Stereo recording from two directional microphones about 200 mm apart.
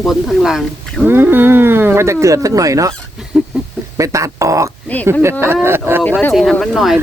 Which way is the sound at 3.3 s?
Centre (ahead or behind).